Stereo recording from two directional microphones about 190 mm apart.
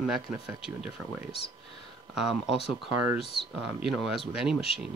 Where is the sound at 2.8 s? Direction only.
5° right (ahead or behind).